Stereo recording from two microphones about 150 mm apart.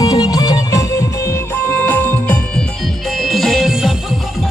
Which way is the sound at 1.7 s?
15° left (ahead or behind).